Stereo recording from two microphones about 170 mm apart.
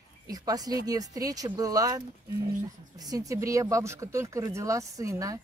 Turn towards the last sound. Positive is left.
turn(degrees=-20)  # may be behind; listen again after turning